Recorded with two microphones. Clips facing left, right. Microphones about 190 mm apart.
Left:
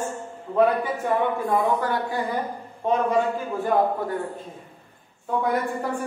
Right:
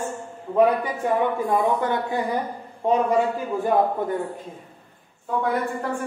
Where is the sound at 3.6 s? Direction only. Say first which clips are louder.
Right 1 dB; 20° right (ahead or behind).